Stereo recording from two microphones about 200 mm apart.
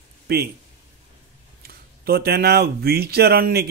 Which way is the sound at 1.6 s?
50° right (ahead or behind).